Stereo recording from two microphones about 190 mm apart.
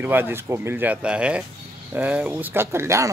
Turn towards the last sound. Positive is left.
turn(degrees=-15)  # may be behind; listen again after turning